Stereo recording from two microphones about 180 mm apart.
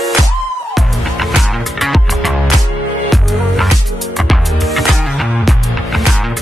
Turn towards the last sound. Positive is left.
turn(degrees=0)  # may be behind; listen again after turning